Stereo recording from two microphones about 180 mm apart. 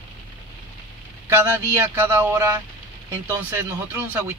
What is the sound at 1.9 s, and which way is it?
Speech, 15° right (ahead or behind).